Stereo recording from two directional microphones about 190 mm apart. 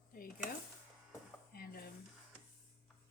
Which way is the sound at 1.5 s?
50° left (ahead or behind).